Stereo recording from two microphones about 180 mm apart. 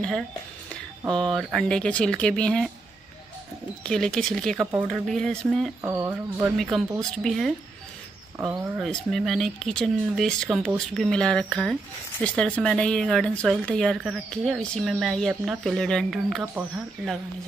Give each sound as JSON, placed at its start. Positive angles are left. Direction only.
{"t": 1.1, "sound": "speech", "side_deg": 0}
{"t": 3.8, "sound": "speech", "side_deg": 5}
{"t": 5.8, "sound": "speech", "side_deg": -15}
{"t": 6.7, "sound": "speech", "side_deg": 0}
{"t": 8.4, "sound": "speech", "side_deg": -10}
{"t": 8.8, "sound": "speech", "side_deg": 0}